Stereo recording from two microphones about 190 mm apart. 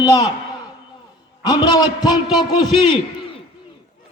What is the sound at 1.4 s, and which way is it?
A man's voice, 20° left (ahead or behind).